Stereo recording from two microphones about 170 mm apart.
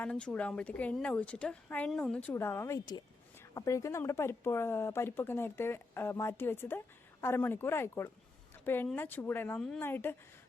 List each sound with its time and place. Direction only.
0.0 s speech: 5° left (ahead or behind)
8.5 s a sound: 10° left (ahead or behind)
9.0 s speech: 10° left (ahead or behind)